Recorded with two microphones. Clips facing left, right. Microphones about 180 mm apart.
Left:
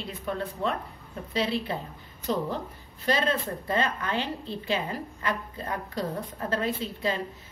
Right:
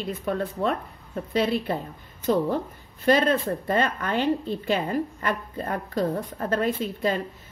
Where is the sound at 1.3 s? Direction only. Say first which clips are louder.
Right 4 dB; 50° right (ahead or behind).